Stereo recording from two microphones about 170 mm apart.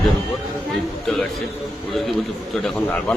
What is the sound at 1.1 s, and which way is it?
A man's voice, centre (ahead or behind).